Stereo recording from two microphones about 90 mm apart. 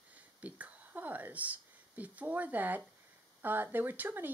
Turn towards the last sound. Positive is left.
turn(degrees=-20)  # may be behind; listen again after turning